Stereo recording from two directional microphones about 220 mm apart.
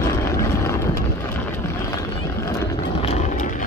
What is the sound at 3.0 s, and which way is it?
Vehicle, 30° left (ahead or behind).